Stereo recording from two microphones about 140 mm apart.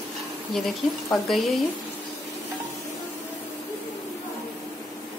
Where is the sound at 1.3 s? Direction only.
Centre (ahead or behind).